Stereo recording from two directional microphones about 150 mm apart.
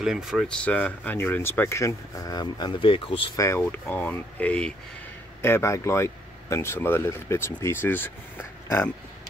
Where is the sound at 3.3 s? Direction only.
20° left (ahead or behind).